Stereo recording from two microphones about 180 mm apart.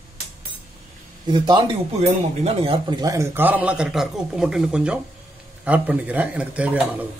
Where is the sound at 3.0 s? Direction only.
15° right (ahead or behind).